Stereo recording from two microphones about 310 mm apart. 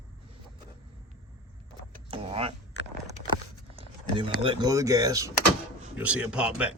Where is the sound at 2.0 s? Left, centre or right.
Centre.